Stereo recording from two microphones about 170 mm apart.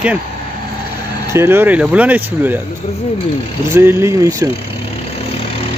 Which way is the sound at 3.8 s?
15° right (ahead or behind).